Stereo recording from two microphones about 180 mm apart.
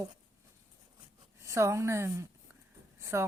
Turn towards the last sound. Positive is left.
turn(degrees=-15)  # may be behind; listen again after turning